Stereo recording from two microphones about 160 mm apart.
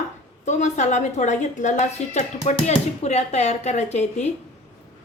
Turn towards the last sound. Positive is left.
turn(degrees=45)  # may be behind; listen again after turning